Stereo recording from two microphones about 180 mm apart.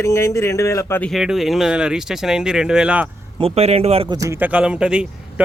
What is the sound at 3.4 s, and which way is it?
Speech, 35° right (ahead or behind).